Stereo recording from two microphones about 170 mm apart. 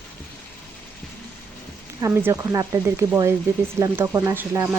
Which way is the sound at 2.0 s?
15° right (ahead or behind).